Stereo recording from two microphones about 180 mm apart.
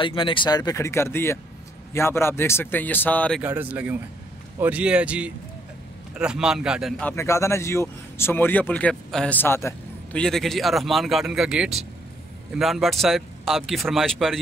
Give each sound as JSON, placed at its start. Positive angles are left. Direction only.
{"t": 0.0, "sound": "speech", "side_deg": 30}
{"t": 3.3, "sound": "speech", "side_deg": -10}
{"t": 10.2, "sound": "speech", "side_deg": 0}